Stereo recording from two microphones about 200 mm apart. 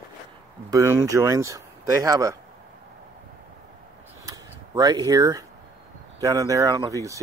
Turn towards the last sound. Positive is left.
turn(degrees=-15)  # may be behind; listen again after turning